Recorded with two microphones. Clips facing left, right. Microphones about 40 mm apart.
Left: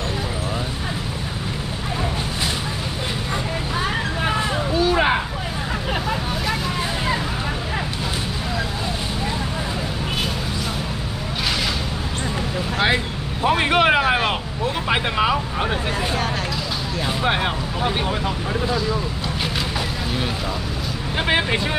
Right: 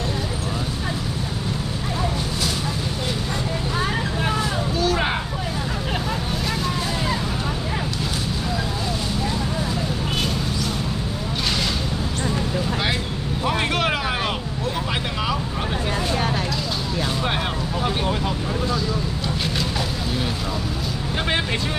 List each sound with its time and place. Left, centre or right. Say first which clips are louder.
4.7 s a sound: left 5 dB; centre
12.8 s vehicle: left 4 dB; left
18.0 s vehicle: even; centre
21.3 s vehicle: left 4 dB; centre